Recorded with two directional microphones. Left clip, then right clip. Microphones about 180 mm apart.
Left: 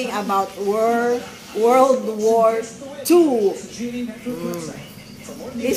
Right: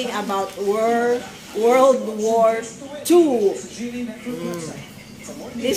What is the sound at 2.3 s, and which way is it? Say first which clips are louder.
Speech: even; 5° left (ahead or behind).